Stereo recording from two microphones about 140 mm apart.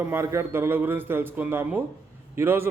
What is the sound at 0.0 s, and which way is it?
A man's voice, 15° right (ahead or behind).